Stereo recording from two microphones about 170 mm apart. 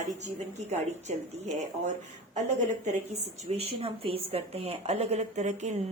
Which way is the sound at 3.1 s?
35° right (ahead or behind).